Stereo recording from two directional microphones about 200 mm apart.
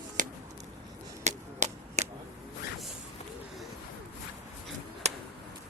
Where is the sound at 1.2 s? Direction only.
35° right (ahead or behind).